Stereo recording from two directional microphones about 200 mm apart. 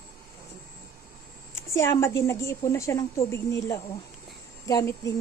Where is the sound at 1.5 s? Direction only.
15° left (ahead or behind).